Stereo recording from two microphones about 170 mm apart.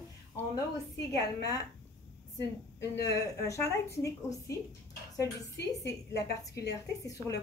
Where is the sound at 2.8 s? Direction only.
20° left (ahead or behind).